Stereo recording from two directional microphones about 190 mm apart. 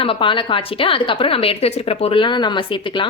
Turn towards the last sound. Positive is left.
turn(degrees=25)  # may be behind; listen again after turning